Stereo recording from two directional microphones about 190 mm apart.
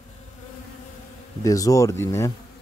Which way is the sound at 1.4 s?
15° left (ahead or behind).